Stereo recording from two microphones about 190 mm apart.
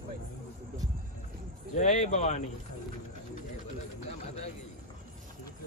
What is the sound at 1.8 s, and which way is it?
Speech, 40° left (ahead or behind).